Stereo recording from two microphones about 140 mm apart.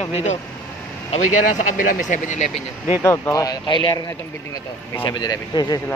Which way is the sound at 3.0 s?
20° left (ahead or behind).